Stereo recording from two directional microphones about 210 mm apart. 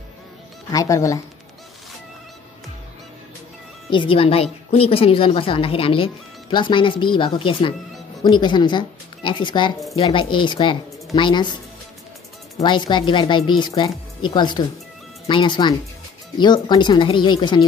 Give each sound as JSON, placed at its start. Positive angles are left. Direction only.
{"t": 0.7, "sound": "speech", "side_deg": 15}
{"t": 3.9, "sound": "a woman's voice", "side_deg": 25}
{"t": 12.5, "sound": "speech", "side_deg": 20}